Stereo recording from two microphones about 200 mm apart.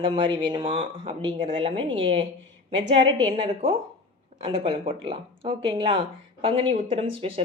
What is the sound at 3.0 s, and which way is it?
A woman's voice, 30° right (ahead or behind).